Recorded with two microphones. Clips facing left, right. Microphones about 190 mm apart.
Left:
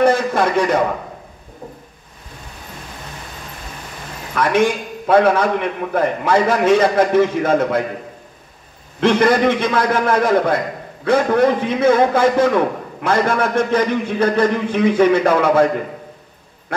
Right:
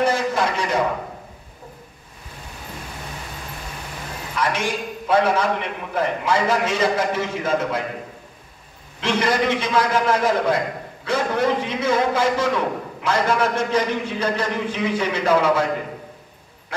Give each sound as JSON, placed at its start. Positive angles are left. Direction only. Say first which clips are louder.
{"t": 0.0, "sound": "a sound", "louder": "left 5 dB", "side_deg": 55}
{"t": 4.4, "sound": "a man's voice", "louder": "left 8 dB", "side_deg": 55}
{"t": 9.0, "sound": "a man's voice", "louder": "left 7 dB", "side_deg": 55}